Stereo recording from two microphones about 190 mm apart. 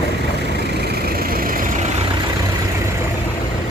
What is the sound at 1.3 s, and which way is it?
Vehicle, 50° right (ahead or behind).